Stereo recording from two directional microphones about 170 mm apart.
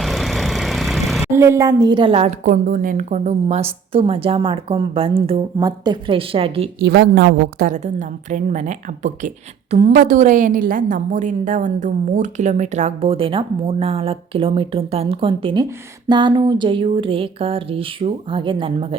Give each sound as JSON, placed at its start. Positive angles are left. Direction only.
{"t": 0.0, "sound": "vehicle", "side_deg": 0}
{"t": 1.2, "sound": "a woman's voice", "side_deg": -15}
{"t": 5.5, "sound": "a woman's voice", "side_deg": -25}
{"t": 6.7, "sound": "a woman's voice", "side_deg": -75}
{"t": 7.7, "sound": "a woman's voice", "side_deg": -45}